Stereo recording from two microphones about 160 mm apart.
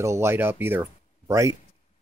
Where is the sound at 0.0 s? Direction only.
15° right (ahead or behind).